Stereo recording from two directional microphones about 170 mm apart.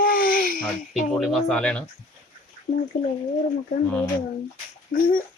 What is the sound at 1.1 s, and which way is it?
Speech, centre (ahead or behind).